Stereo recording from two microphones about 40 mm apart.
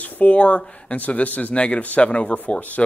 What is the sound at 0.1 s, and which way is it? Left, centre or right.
Speech, left.